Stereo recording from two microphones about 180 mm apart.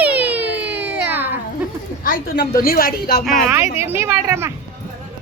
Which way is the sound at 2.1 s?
60° left (ahead or behind).